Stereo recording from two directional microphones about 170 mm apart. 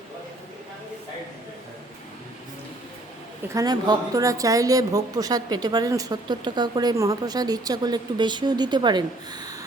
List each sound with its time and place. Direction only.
3.5 s speech: 20° right (ahead or behind)